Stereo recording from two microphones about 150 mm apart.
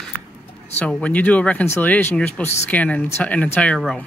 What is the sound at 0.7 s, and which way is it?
Speech, 10° left (ahead or behind).